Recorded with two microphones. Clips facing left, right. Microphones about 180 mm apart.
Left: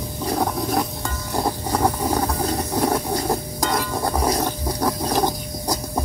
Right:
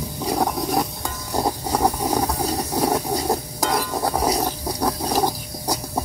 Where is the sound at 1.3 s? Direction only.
15° right (ahead or behind).